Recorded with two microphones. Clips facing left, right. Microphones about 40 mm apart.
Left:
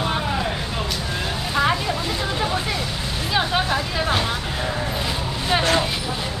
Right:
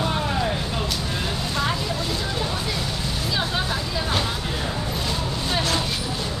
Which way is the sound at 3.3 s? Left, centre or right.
Left.